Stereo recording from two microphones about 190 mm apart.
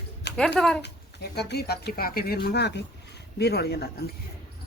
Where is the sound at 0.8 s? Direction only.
60° left (ahead or behind).